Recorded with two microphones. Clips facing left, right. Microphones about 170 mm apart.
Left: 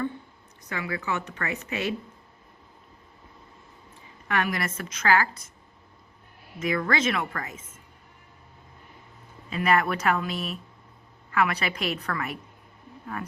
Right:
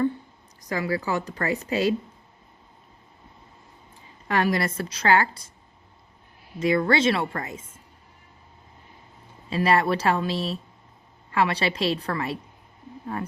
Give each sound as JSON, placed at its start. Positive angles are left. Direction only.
{"t": 0.7, "sound": "speech", "side_deg": -35}
{"t": 4.3, "sound": "speech", "side_deg": -35}
{"t": 6.6, "sound": "speech", "side_deg": -30}
{"t": 9.5, "sound": "speech", "side_deg": -30}